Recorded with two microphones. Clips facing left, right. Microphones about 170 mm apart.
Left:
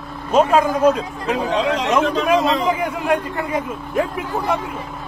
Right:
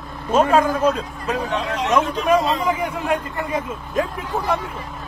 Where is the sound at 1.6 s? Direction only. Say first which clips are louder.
Left 2 dB; 90° left.